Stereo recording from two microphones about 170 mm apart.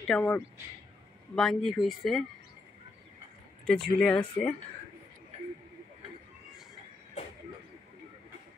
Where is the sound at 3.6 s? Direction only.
5° left (ahead or behind).